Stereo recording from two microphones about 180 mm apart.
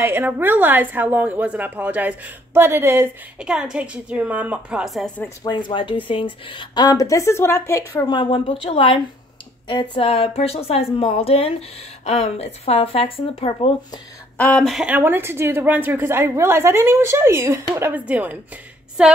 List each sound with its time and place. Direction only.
0.0 s a woman's voice: 10° right (ahead or behind); by 5.3 s 5° left (ahead or behind)
5.4 s speech: 25° left (ahead or behind)
8.1 s a woman's voice: 30° left (ahead or behind)
14.3 s a woman's voice: 5° left (ahead or behind)